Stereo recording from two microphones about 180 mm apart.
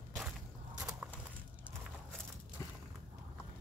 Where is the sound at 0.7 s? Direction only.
5° right (ahead or behind).